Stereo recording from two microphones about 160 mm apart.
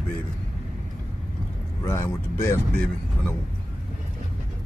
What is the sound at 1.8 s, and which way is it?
Speech, 20° left (ahead or behind).